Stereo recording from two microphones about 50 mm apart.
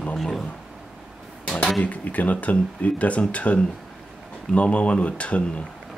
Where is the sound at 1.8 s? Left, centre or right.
Left.